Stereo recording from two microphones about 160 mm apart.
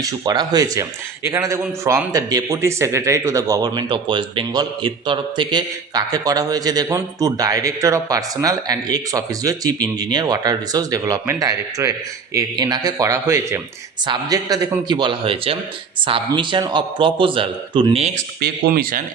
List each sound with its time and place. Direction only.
0.0 s a man's voice: 25° right (ahead or behind)
18.3 s speech: 90° right; by 19.0 s 65° right (ahead or behind)